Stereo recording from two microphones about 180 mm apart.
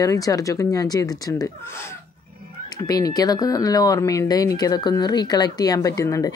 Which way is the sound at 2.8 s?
20° left (ahead or behind).